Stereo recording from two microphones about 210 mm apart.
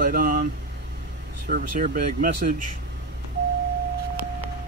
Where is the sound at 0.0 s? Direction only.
40° right (ahead or behind).